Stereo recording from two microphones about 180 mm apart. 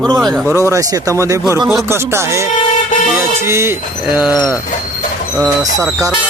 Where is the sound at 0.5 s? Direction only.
15° right (ahead or behind).